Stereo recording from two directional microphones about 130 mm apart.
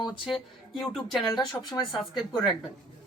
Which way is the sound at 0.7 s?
Centre (ahead or behind).